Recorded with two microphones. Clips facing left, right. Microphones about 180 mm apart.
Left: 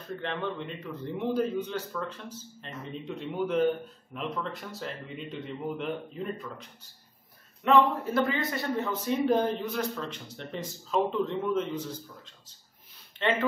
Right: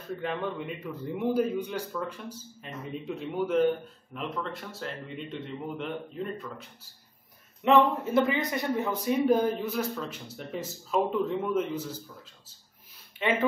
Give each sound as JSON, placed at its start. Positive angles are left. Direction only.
{"t": 0.2, "sound": "a man's voice", "side_deg": -5}
{"t": 7.6, "sound": "a man's voice", "side_deg": -20}
{"t": 13.2, "sound": "a man's voice", "side_deg": -10}